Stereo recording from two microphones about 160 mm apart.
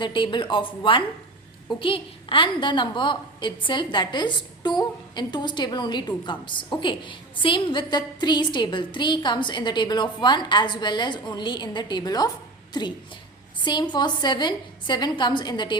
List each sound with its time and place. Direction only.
0.0 s a woman's voice: 30° left (ahead or behind)